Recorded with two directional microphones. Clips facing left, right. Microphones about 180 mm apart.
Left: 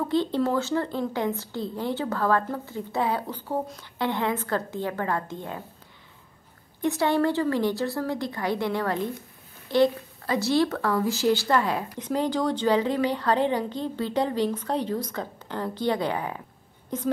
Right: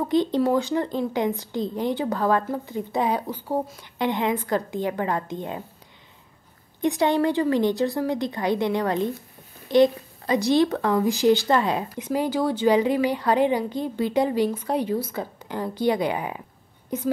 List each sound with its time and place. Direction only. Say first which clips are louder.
0.1 s a woman's voice: right 4 dB; 15° right (ahead or behind)
6.8 s a woman's voice: right 2 dB; 20° right (ahead or behind)
12.0 s a woman's voice: right 1 dB; 10° right (ahead or behind)